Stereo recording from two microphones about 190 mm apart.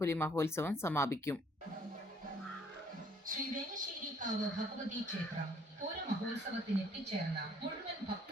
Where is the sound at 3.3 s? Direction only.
45° right (ahead or behind).